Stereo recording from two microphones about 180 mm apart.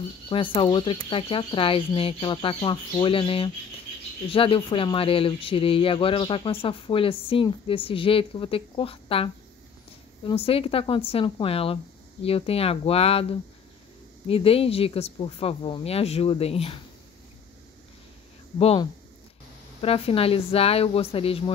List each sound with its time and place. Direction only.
0.3 s speech: 30° left (ahead or behind)
18.6 s speech: 30° left (ahead or behind)